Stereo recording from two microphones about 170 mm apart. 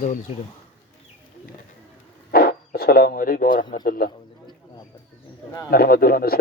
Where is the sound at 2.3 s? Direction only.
65° left (ahead or behind).